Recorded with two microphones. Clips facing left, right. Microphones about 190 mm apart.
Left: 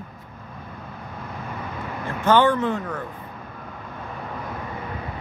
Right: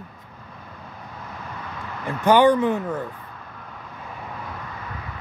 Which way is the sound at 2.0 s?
15° right (ahead or behind).